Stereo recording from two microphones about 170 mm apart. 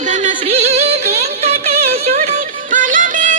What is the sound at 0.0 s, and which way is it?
Music, 45° right (ahead or behind).